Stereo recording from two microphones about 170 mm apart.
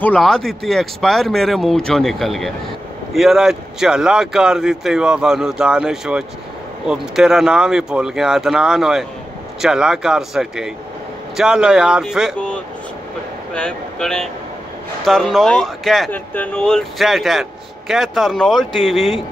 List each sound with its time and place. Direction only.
0.0 s speech: 5° left (ahead or behind)
12.4 s a sound: 5° left (ahead or behind)
13.5 s speech: 5° left (ahead or behind)